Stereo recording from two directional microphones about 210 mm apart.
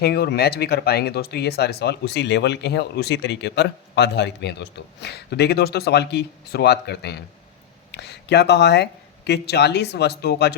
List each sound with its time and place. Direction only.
0.0 s speech: 50° left (ahead or behind)